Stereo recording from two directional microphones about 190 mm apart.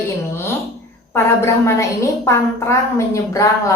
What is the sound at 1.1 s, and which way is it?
A woman's voice, 15° left (ahead or behind).